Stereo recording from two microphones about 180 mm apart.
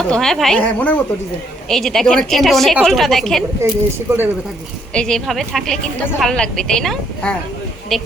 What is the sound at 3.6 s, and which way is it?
Speech, 15° right (ahead or behind).